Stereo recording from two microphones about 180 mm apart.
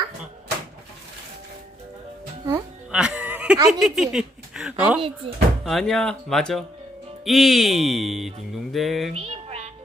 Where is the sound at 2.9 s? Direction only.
5° right (ahead or behind).